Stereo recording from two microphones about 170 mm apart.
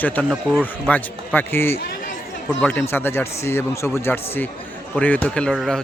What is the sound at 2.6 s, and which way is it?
A man's voice, 15° left (ahead or behind).